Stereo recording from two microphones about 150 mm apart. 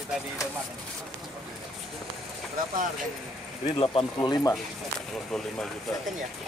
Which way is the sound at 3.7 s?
30° left (ahead or behind).